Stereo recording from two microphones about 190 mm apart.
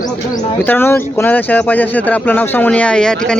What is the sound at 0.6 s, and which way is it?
Speech, 10° left (ahead or behind).